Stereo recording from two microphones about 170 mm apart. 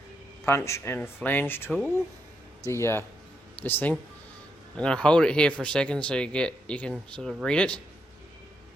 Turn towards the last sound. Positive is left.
turn(degrees=5)  # may be behind; listen again after turning